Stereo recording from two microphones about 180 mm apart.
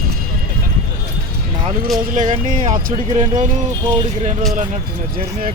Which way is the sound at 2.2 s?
45° right (ahead or behind).